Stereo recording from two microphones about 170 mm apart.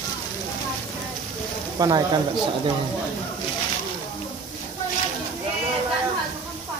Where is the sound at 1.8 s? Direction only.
20° right (ahead or behind).